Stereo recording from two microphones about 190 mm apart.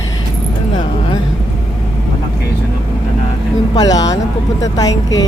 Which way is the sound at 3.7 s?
20° left (ahead or behind).